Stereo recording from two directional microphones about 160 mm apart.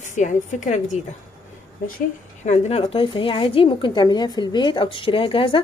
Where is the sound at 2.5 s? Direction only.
35° left (ahead or behind).